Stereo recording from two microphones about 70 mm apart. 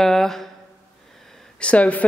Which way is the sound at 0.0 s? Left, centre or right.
Centre.